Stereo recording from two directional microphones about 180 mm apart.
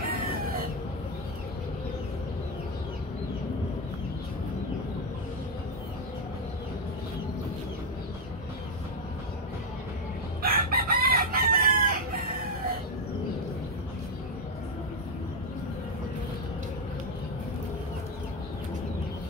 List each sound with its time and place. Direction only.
10.4 s chicken: 55° right (ahead or behind)